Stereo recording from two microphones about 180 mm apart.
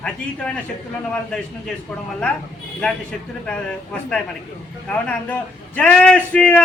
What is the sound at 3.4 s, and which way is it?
A man's voice, 5° left (ahead or behind).